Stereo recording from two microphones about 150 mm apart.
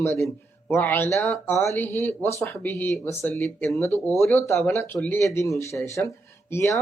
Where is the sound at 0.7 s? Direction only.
15° left (ahead or behind).